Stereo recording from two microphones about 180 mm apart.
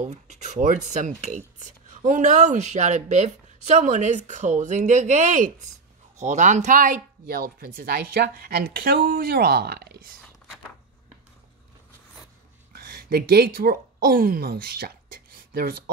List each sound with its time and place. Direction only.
0.0 s a woman's voice: 40° right (ahead or behind); by 10.1 s 55° right (ahead or behind)
12.7 s speech: 60° right (ahead or behind)